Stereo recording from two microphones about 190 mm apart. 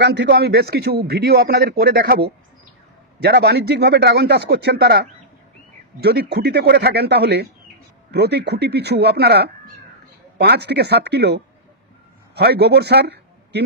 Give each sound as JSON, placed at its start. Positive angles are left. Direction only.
{"t": 0.0, "sound": "a man's voice", "side_deg": -65}